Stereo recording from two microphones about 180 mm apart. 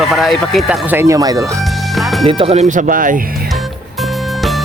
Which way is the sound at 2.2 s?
30° right (ahead or behind).